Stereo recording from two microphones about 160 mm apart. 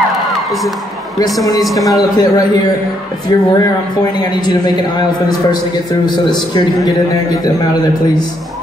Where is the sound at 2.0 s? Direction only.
25° left (ahead or behind).